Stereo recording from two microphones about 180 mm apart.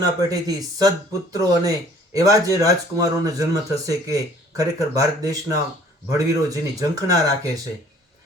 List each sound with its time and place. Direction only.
0.0 s speech: 20° right (ahead or behind)